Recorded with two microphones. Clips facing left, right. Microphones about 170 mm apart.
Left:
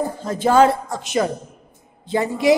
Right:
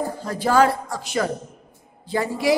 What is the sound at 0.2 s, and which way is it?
A man's voice, 20° left (ahead or behind).